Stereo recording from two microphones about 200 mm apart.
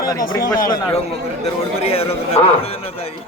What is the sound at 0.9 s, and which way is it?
A man's voice, 30° left (ahead or behind).